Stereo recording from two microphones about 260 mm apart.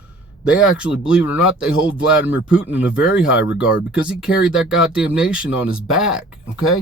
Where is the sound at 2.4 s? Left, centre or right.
Left.